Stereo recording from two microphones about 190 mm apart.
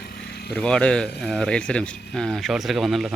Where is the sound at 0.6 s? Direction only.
5° left (ahead or behind).